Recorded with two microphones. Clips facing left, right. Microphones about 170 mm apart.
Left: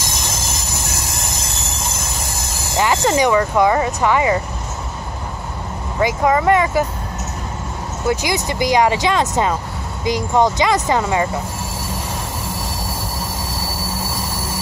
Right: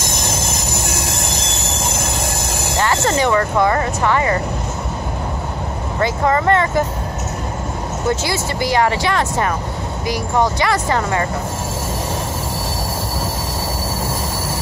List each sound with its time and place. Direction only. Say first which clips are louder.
2.8 s speech: left 2 dB; 15° left (ahead or behind)
5.9 s speech: left 1 dB; 10° left (ahead or behind)
8.1 s speech: left 1 dB; 15° left (ahead or behind)